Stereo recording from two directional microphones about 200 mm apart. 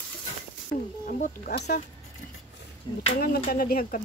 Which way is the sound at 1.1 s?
45° left (ahead or behind).